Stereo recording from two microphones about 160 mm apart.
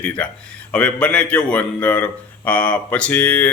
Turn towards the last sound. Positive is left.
turn(degrees=10)  # may be behind; listen again after turning